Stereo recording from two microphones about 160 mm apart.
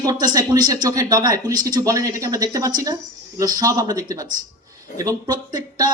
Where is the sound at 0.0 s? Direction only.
25° right (ahead or behind).